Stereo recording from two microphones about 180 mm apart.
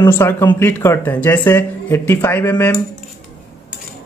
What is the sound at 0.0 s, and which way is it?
Speech, 15° left (ahead or behind).